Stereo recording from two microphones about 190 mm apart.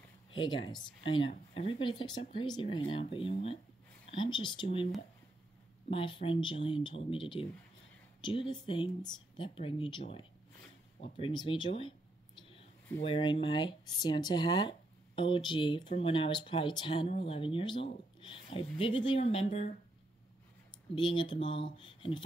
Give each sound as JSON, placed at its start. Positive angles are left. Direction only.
{"t": 0.3, "sound": "speech", "side_deg": 25}
{"t": 5.9, "sound": "speech", "side_deg": 30}
{"t": 20.9, "sound": "speech", "side_deg": 25}